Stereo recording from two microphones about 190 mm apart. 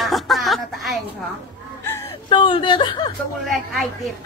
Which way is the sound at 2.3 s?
25° left (ahead or behind).